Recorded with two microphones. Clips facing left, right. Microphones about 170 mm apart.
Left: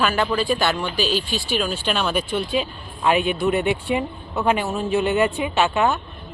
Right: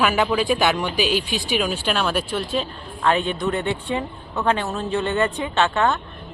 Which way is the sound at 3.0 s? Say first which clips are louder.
Left 2 dB; 15° left (ahead or behind).